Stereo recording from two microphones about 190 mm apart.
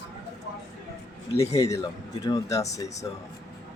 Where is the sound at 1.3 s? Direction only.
15° left (ahead or behind).